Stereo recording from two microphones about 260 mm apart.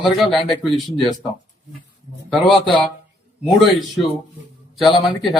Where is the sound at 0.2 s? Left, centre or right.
Centre.